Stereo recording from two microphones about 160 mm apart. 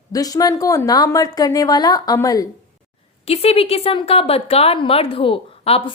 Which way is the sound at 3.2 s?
40° left (ahead or behind).